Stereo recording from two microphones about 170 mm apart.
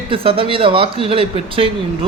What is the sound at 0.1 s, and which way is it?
A man's voice, 30° right (ahead or behind).